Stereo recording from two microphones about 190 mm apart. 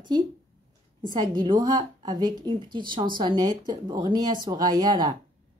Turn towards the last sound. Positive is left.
turn(degrees=-20)  # may be behind; listen again after turning